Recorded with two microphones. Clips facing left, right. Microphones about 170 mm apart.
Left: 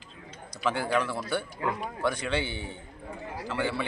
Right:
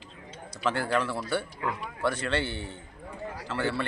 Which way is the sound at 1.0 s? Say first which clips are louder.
Right 1 dB; 5° right (ahead or behind).